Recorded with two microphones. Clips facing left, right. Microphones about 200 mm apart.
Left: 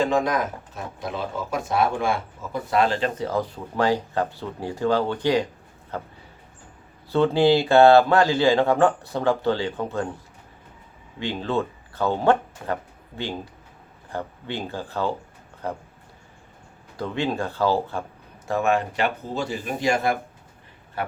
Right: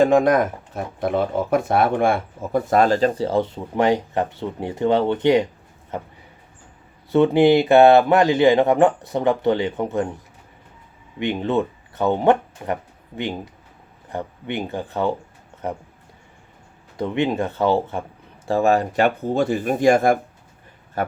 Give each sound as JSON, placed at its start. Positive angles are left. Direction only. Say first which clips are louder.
{"t": 0.0, "sound": "speech", "louder": "right 7 dB", "side_deg": -55}
{"t": 7.1, "sound": "speech", "louder": "right 4 dB", "side_deg": -20}
{"t": 11.2, "sound": "speech", "louder": "right 4 dB", "side_deg": -20}
{"t": 17.0, "sound": "speech", "louder": "right 4 dB", "side_deg": -20}
{"t": 18.4, "sound": "speech", "louder": "right 4 dB", "side_deg": -35}